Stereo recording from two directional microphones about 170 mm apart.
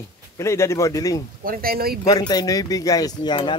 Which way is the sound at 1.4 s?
60° right (ahead or behind).